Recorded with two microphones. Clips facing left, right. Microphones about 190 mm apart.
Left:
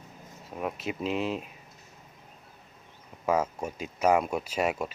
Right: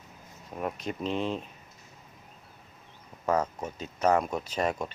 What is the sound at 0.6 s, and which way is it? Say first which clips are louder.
Speech: left 1 dB; 5° left (ahead or behind).